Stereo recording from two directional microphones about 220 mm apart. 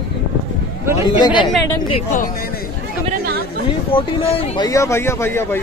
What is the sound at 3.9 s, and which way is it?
Speech, 25° left (ahead or behind).